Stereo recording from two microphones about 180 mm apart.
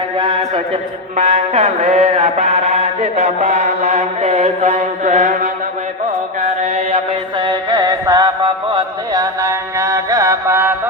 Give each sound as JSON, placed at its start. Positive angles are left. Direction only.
{"t": 0.2, "sound": "a man's voice", "side_deg": -30}
{"t": 1.1, "sound": "mantra", "side_deg": -35}
{"t": 6.4, "sound": "chant", "side_deg": -35}
{"t": 9.1, "sound": "music", "side_deg": -20}